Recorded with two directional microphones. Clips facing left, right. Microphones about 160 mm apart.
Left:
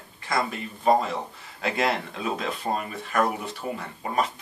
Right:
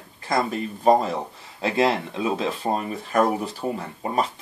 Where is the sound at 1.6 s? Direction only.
25° right (ahead or behind).